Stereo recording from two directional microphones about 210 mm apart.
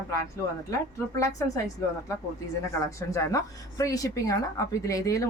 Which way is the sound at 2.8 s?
15° left (ahead or behind).